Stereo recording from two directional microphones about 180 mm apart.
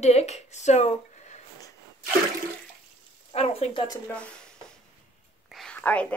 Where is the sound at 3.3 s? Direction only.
35° left (ahead or behind).